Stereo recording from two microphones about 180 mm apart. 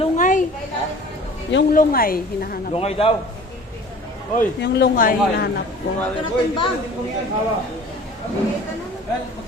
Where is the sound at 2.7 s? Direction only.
35° left (ahead or behind).